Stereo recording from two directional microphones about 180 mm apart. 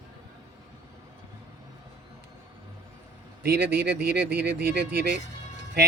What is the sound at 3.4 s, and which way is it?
Speech, 65° right (ahead or behind).